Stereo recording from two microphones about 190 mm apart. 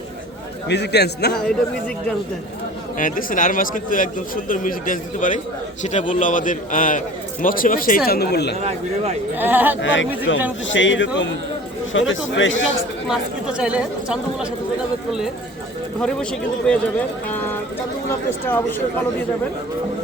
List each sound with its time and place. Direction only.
0.7 s a man's voice: 60° left (ahead or behind)
3.0 s speech: 45° left (ahead or behind)
9.3 s speech: 10° right (ahead or behind)
9.8 s speech: 80° left
11.9 s speech: 90° left
13.1 s speech: 5° right (ahead or behind)
16.0 s speech: 5° left (ahead or behind)
17.2 s a sound: 10° left (ahead or behind)